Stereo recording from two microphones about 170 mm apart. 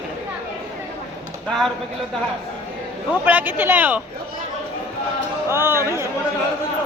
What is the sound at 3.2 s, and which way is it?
Speech, 10° right (ahead or behind).